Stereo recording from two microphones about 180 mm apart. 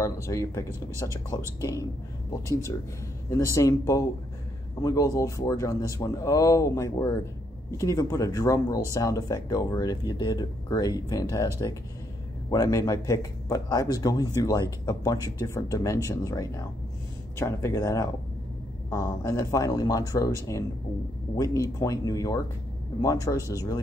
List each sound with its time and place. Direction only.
0.0 s speech: 15° left (ahead or behind)
3.5 s speech: 20° left (ahead or behind)
12.4 s speech: 20° left (ahead or behind)
21.4 s speech: 15° left (ahead or behind)